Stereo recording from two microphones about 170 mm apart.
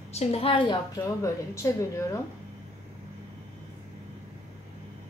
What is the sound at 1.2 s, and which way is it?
A woman's voice, 15° left (ahead or behind).